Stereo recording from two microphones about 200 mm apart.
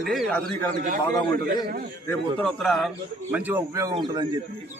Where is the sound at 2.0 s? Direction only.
5° left (ahead or behind); by 3.9 s 15° right (ahead or behind).